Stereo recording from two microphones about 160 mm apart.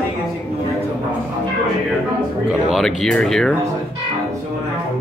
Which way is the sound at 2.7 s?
5° left (ahead or behind).